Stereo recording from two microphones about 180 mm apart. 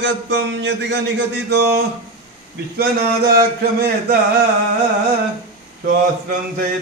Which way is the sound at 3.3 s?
60° right (ahead or behind).